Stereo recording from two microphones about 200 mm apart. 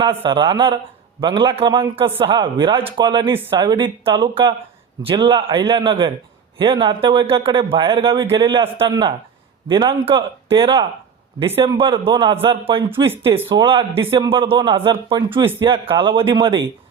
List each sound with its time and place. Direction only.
0.0 s a man's voice: 25° right (ahead or behind)
12.9 s speech: 10° right (ahead or behind)
13.5 s a man's voice: 25° right (ahead or behind)